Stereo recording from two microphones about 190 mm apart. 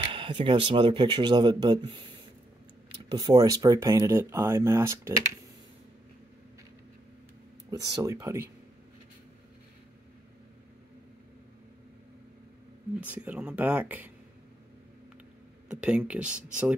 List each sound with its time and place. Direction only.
0.0 s speech: 25° right (ahead or behind)
3.1 s speech: 20° right (ahead or behind)
7.7 s speech: 20° right (ahead or behind)
13.0 s speech: 5° right (ahead or behind)
15.7 s speech: 5° right (ahead or behind)